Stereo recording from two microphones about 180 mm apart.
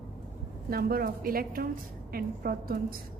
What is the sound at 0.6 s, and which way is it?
A woman's voice, 55° right (ahead or behind).